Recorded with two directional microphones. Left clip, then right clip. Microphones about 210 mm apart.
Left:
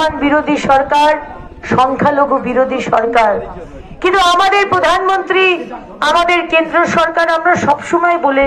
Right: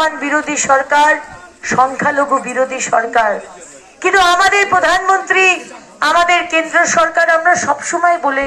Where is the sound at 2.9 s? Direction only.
30° left (ahead or behind).